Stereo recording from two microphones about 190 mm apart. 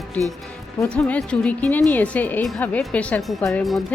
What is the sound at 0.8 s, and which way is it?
A woman's voice, 5° left (ahead or behind).